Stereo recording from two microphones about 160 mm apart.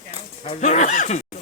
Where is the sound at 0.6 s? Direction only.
50° left (ahead or behind).